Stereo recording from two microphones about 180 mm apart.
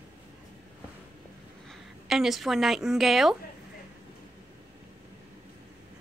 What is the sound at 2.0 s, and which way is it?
A woman's voice, centre (ahead or behind).